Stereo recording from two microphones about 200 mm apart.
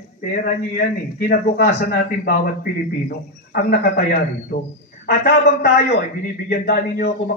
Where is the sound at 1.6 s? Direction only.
50° left (ahead or behind).